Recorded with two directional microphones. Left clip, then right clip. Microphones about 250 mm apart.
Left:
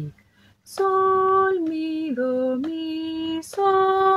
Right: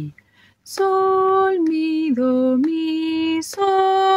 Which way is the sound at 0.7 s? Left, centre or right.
Right.